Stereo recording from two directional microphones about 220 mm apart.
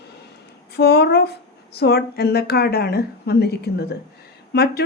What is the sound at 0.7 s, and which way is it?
Speech, 50° left (ahead or behind).